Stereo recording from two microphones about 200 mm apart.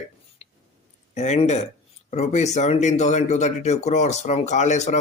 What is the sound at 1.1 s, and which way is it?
Speech, 35° left (ahead or behind).